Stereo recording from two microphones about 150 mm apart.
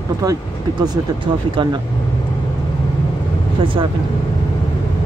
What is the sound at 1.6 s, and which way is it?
Speech, 30° right (ahead or behind).